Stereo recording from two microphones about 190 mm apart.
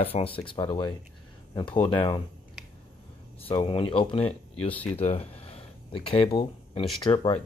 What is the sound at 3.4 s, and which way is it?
Speech, 30° left (ahead or behind).